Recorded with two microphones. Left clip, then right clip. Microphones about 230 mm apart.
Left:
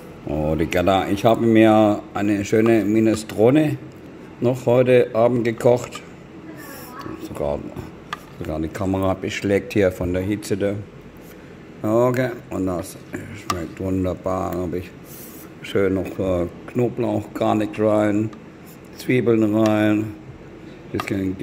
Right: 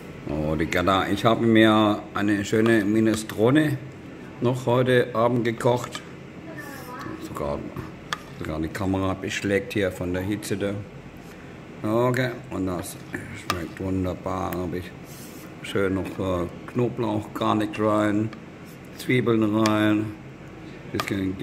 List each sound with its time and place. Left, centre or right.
0.7 s speech: centre
7.4 s speech: centre
11.8 s speech: centre